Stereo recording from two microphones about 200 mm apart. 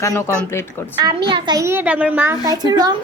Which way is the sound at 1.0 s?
25° right (ahead or behind).